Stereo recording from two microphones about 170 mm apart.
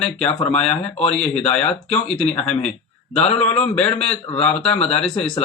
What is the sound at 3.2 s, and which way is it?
A man's voice, 35° left (ahead or behind).